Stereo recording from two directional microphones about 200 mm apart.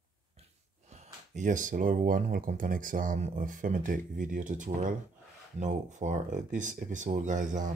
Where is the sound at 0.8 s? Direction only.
35° right (ahead or behind).